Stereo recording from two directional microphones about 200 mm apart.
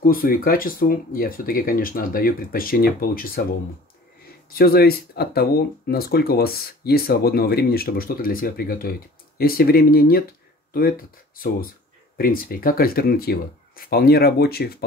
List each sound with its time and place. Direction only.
0.0 s speech: 45° left (ahead or behind)
4.5 s speech: 50° left (ahead or behind)